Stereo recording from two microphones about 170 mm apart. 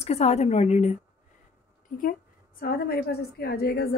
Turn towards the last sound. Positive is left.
turn(degrees=65)  # may be behind; listen again after turning